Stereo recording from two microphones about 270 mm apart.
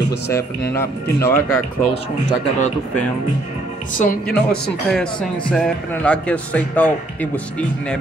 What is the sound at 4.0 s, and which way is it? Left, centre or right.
Speech, left.